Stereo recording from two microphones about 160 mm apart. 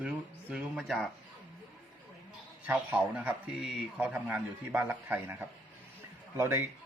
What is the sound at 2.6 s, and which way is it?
A man's voice, 10° right (ahead or behind).